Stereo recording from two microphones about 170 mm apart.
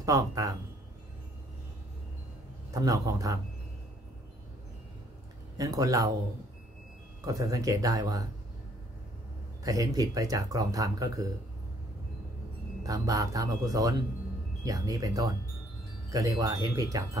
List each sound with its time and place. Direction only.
0.0 s speech: 20° right (ahead or behind)
2.7 s speech: 20° right (ahead or behind)
5.6 s speech: 20° right (ahead or behind)
7.2 s speech: 20° right (ahead or behind)
9.6 s speech: 20° right (ahead or behind)
12.8 s speech: 20° right (ahead or behind)